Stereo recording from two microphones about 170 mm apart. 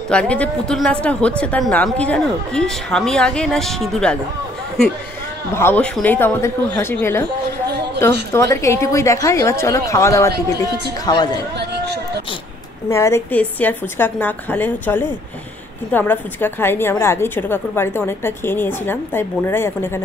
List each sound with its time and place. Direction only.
0.1 s speech: 5° left (ahead or behind)
5.5 s a woman's voice: 15° left (ahead or behind)
7.6 s a sound: 75° right (ahead or behind)
8.3 s a woman's voice: 15° left (ahead or behind)
11.5 s a sound: 75° right (ahead or behind)
12.9 s a woman's voice: 15° left (ahead or behind)